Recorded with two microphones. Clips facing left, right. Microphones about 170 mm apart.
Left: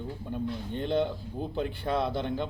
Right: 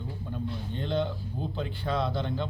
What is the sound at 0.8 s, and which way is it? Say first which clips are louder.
Speech: left 2 dB; 15° left (ahead or behind).